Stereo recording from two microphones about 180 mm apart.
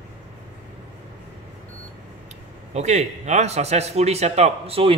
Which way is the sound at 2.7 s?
40° right (ahead or behind).